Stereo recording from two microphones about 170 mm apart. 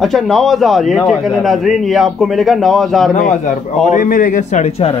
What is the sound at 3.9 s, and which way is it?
A man's voice, 50° left (ahead or behind).